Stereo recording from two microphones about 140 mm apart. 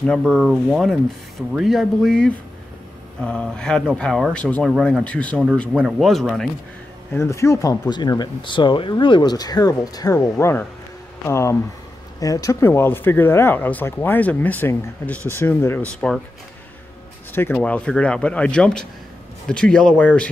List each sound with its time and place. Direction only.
0.0 s speech: 5° left (ahead or behind)
7.1 s speech: 20° left (ahead or behind)
16.0 s speech: 5° left (ahead or behind)
17.3 s speech: 15° left (ahead or behind)